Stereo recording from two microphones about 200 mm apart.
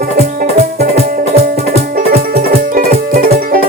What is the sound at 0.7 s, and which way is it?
Music, 45° right (ahead or behind).